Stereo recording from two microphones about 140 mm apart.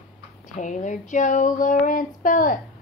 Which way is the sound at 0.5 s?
60° left (ahead or behind).